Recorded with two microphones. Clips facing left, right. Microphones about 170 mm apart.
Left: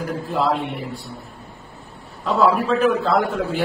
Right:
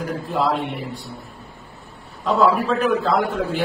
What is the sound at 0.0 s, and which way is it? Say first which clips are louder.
Speech: even; centre (ahead or behind).